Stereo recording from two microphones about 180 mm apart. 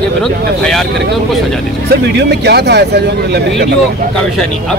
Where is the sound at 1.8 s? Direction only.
70° right (ahead or behind).